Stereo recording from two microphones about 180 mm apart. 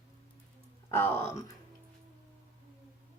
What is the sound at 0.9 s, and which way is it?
Speech, 15° left (ahead or behind).